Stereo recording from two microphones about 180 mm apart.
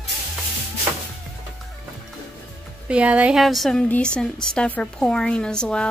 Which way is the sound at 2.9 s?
5° right (ahead or behind).